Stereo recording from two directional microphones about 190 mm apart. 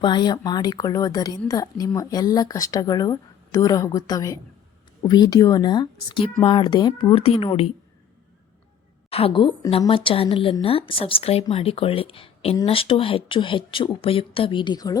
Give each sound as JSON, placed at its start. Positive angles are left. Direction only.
{"t": 0.0, "sound": "a woman's voice", "side_deg": 25}
{"t": 9.0, "sound": "a woman's voice", "side_deg": 30}